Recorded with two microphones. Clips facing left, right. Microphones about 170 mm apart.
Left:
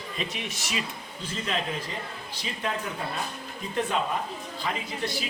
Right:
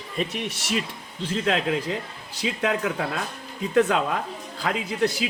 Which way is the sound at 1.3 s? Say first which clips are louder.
Right 7 dB; 75° right (ahead or behind).